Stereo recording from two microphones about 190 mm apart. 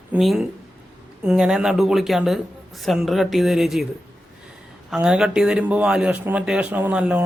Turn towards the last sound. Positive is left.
turn(degrees=-5)  # may be behind; listen again after turning